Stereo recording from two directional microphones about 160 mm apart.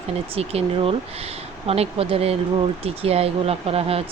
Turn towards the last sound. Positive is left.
turn(degrees=-40)  # may be behind; listen again after turning